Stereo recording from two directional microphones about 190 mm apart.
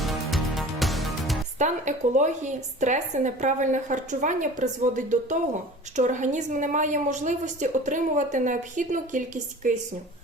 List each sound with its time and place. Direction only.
0.0 s music: centre (ahead or behind)
1.5 s a woman's voice: 40° right (ahead or behind)